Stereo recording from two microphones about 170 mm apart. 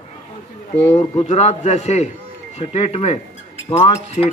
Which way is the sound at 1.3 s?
40° left (ahead or behind).